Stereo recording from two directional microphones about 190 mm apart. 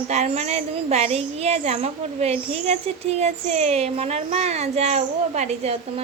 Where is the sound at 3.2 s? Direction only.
35° right (ahead or behind).